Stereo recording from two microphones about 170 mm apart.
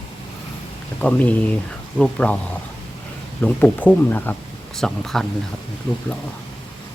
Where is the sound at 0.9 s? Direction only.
10° left (ahead or behind).